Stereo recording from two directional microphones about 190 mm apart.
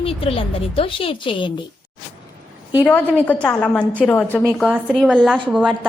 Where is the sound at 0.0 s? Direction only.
30° left (ahead or behind).